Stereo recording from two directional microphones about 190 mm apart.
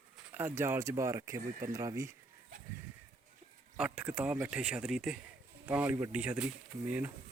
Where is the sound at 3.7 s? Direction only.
5° right (ahead or behind).